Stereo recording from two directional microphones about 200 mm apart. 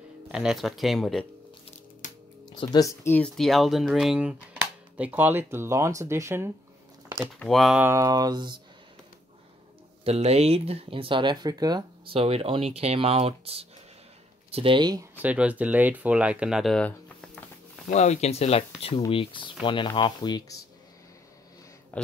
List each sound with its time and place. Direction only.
0.3 s speech: 5° right (ahead or behind)
2.0 s music: 40° left (ahead or behind)
2.6 s speech: 20° left (ahead or behind); by 6.5 s 15° right (ahead or behind)
7.3 s speech: centre (ahead or behind); by 8.5 s 20° right (ahead or behind)
10.0 s speech: 30° right (ahead or behind)
15.1 s speech: 5° right (ahead or behind)
17.8 s speech: 35° left (ahead or behind)
21.9 s speech: 5° left (ahead or behind)